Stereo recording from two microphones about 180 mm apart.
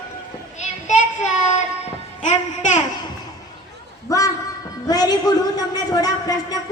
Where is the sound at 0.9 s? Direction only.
40° left (ahead or behind).